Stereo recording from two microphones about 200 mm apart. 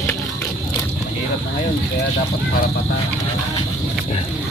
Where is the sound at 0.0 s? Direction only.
10° left (ahead or behind).